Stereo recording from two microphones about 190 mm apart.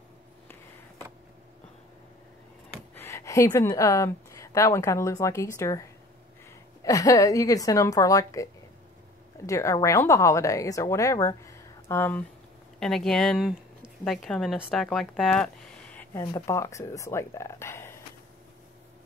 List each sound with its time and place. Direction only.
2.7 s a woman's voice: 10° left (ahead or behind)
9.5 s a woman's voice: 15° left (ahead or behind)